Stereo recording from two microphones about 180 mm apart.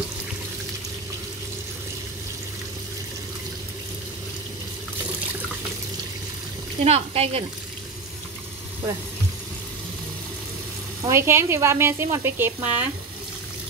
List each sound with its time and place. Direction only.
6.8 s speech: 35° right (ahead or behind)
11.1 s speech: 15° right (ahead or behind)